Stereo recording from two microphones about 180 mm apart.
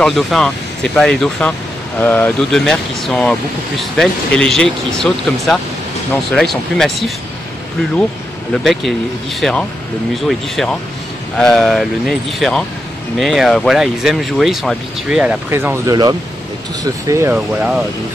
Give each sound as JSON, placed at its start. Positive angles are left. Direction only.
{"t": 0.0, "sound": "speech", "side_deg": 0}
{"t": 8.6, "sound": "speech", "side_deg": 0}